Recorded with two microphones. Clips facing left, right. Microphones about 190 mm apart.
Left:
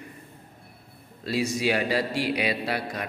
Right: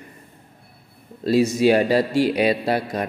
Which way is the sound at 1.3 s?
45° right (ahead or behind).